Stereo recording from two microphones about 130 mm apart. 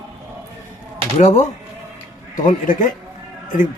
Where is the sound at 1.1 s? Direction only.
65° left (ahead or behind).